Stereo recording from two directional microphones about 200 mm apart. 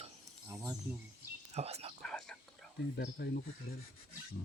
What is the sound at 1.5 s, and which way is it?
Speech, 30° right (ahead or behind).